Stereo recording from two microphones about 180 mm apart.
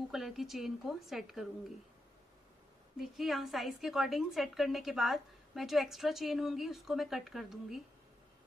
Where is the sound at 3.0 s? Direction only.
Centre (ahead or behind).